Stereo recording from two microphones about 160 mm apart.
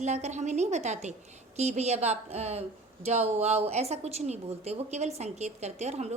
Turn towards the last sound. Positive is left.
turn(degrees=-45)  # may be behind; listen again after turning